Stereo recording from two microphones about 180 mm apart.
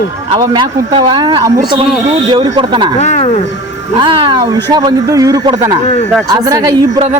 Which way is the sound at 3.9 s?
25° right (ahead or behind).